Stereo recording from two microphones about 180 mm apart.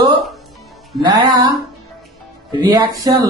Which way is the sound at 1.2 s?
20° right (ahead or behind).